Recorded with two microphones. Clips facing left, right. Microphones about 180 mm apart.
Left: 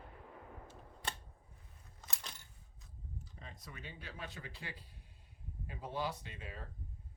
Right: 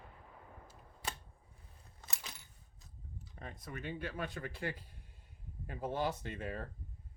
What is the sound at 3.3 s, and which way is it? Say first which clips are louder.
Speech: right 10 dB; 55° right (ahead or behind).